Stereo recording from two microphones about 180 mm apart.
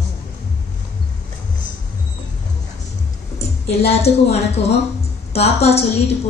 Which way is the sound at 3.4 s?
35° left (ahead or behind).